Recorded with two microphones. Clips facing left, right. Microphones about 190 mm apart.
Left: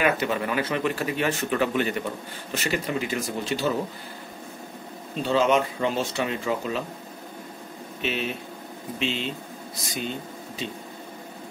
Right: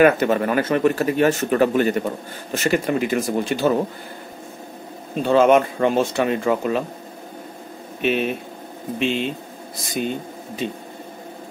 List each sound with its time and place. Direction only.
0.0 s speech: 50° right (ahead or behind)
5.1 s speech: 55° right (ahead or behind)
8.0 s speech: 55° right (ahead or behind)